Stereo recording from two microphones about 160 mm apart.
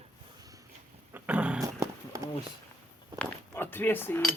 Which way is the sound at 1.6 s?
20° right (ahead or behind).